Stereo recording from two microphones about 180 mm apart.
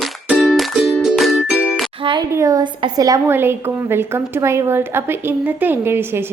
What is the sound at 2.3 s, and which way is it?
A woman's voice, 20° right (ahead or behind).